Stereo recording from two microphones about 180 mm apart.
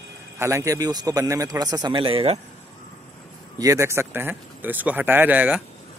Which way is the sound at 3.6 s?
15° right (ahead or behind).